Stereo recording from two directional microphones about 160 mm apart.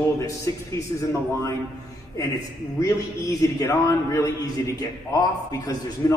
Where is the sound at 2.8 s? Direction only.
20° left (ahead or behind).